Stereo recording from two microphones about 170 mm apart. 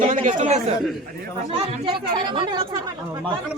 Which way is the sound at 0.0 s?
45° right (ahead or behind).